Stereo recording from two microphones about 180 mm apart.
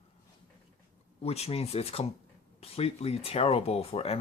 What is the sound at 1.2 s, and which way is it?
Speech, 35° left (ahead or behind).